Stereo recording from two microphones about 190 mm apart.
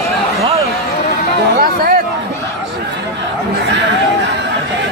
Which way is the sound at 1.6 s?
50° right (ahead or behind).